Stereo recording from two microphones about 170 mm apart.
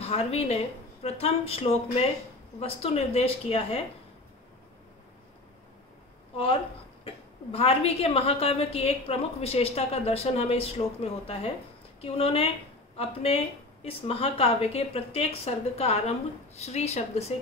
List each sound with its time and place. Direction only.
0.0 s a woman's voice: 35° left (ahead or behind)
7.1 s a woman's voice: 35° left (ahead or behind)